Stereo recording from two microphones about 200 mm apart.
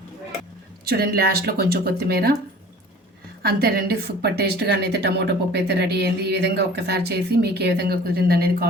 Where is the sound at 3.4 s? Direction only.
50° right (ahead or behind).